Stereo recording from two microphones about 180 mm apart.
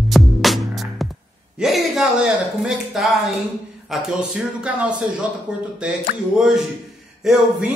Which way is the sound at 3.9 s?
5° right (ahead or behind).